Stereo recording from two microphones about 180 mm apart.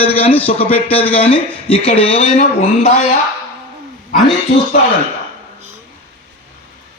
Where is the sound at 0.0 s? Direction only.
35° left (ahead or behind).